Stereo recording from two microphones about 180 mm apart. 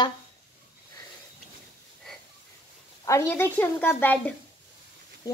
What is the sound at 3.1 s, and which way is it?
A woman's voice, 15° left (ahead or behind).